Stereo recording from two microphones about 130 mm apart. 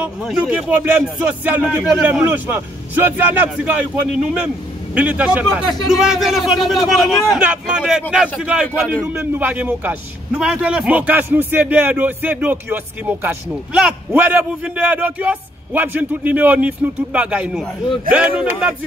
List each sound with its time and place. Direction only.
0.0 s a man's voice: 5° right (ahead or behind)
5.9 s a man's voice: centre (ahead or behind)